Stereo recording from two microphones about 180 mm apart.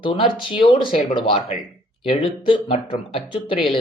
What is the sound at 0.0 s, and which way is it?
Speech, 30° left (ahead or behind).